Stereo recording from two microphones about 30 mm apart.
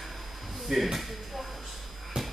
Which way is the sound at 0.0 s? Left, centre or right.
Centre.